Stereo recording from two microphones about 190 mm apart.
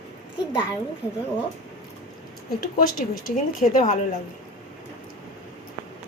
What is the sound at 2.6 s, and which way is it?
Speech, 50° left (ahead or behind).